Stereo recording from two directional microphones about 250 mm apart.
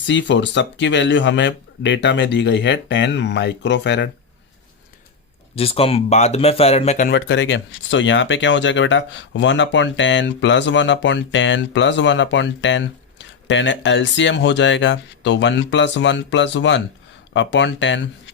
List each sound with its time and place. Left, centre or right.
0.0 s speech: left
5.5 s speech: left
7.1 s speech: left